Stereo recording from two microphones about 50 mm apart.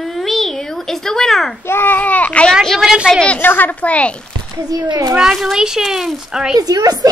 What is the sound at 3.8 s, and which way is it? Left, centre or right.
Speech, left.